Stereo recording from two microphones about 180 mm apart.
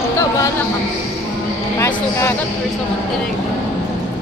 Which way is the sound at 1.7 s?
15° left (ahead or behind).